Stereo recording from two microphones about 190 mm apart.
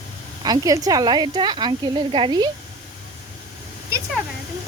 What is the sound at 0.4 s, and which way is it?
Speech, 20° right (ahead or behind).